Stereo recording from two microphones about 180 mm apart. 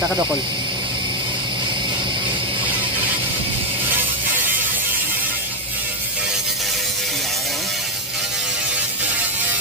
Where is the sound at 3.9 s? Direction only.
10° right (ahead or behind).